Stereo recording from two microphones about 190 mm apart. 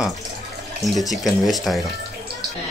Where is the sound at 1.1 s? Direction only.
Centre (ahead or behind).